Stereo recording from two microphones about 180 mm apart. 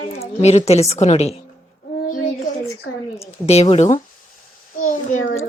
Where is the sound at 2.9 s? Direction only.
60° left (ahead or behind).